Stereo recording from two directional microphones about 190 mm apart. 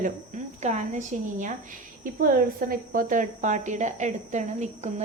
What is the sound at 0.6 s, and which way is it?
A woman's voice, 40° right (ahead or behind).